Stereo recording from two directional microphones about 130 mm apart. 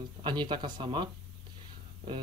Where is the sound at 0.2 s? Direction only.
35° right (ahead or behind).